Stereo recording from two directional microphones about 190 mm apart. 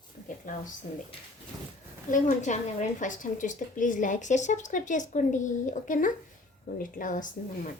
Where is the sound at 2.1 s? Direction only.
40° left (ahead or behind).